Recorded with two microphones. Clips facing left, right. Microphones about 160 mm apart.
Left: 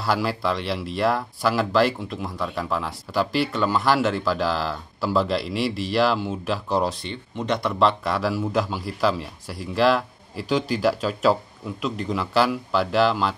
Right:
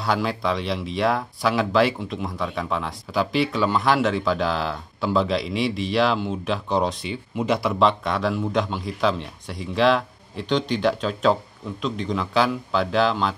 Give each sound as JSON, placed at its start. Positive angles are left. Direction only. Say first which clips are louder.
{"t": 0.0, "sound": "speech", "louder": "even", "side_deg": 0}